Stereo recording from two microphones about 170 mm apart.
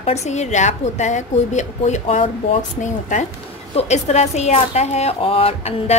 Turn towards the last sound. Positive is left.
turn(degrees=35)  # may be behind; listen again after turning